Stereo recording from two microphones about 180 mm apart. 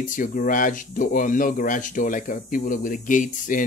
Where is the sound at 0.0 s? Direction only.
45° left (ahead or behind).